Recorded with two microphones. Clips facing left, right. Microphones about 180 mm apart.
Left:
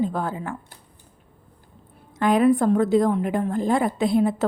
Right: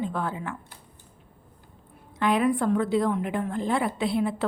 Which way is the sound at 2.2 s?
45° left (ahead or behind).